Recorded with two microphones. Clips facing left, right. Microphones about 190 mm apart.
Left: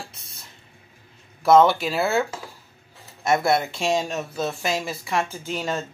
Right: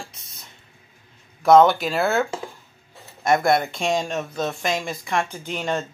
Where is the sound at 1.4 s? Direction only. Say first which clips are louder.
Right 2 dB; centre (ahead or behind).